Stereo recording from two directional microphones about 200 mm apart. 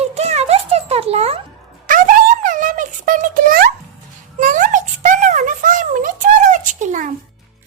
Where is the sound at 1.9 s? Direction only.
40° right (ahead or behind).